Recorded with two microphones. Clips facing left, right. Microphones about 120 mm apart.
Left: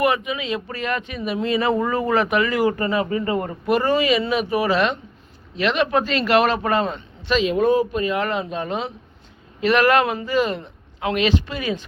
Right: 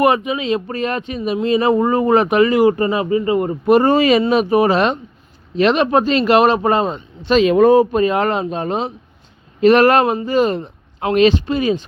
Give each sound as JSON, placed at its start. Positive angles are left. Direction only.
{"t": 0.0, "sound": "speech", "side_deg": -30}
{"t": 7.4, "sound": "speech", "side_deg": -60}